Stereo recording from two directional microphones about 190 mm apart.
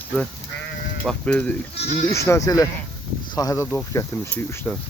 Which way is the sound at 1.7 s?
35° left (ahead or behind).